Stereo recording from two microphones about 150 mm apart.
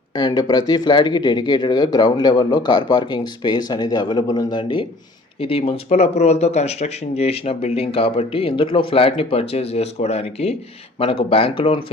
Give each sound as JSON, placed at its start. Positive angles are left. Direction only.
{"t": 0.2, "sound": "speech", "side_deg": 30}